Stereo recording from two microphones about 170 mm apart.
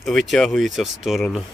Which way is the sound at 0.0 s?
Centre (ahead or behind).